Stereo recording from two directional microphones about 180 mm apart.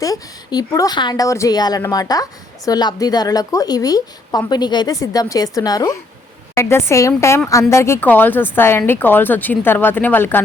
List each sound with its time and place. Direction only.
0.0 s a woman's voice: 20° left (ahead or behind)